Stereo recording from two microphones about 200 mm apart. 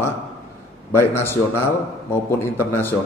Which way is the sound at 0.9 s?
10° left (ahead or behind).